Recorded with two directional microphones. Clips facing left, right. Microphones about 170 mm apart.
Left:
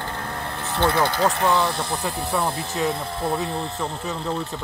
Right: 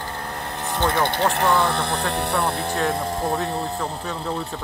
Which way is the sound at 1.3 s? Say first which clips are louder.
Right 1 dB; 60° right (ahead or behind).